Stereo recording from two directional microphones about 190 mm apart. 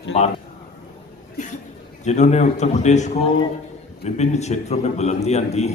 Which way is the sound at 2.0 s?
40° left (ahead or behind).